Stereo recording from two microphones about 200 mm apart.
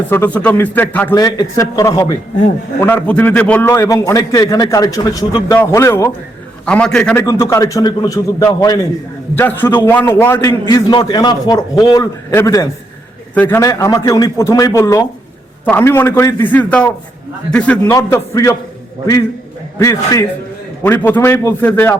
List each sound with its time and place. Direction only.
0.1 s a man's voice: 10° left (ahead or behind)
17.8 s a man's voice: 15° left (ahead or behind)
19.8 s a man's voice: 15° left (ahead or behind)